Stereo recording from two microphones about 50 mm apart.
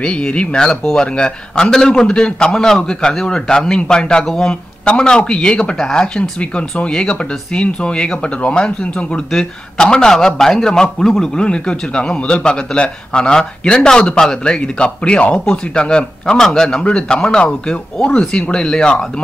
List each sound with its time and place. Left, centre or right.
0.0 s a man's voice: left